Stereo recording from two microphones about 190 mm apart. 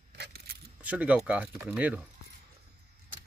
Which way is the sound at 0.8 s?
5° right (ahead or behind).